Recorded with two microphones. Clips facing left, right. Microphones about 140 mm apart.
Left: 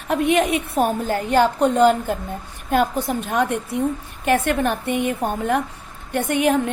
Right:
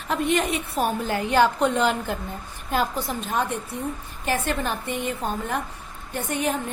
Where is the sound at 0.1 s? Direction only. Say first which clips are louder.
Left 5 dB; 60° left (ahead or behind).